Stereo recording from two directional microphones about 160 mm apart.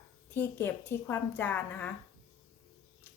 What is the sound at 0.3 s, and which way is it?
A woman's voice, 15° left (ahead or behind).